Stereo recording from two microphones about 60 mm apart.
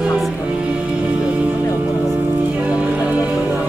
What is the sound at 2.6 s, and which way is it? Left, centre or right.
Music, right.